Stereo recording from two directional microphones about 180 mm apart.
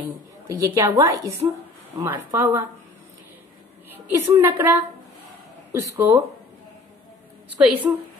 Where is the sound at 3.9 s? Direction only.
10° right (ahead or behind).